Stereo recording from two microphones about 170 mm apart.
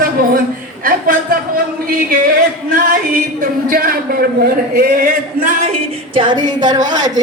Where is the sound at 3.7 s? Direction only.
60° right (ahead or behind).